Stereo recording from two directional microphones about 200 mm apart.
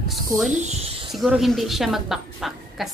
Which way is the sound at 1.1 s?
Centre (ahead or behind).